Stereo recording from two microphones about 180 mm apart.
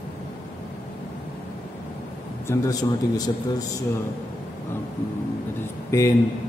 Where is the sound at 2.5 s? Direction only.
20° left (ahead or behind).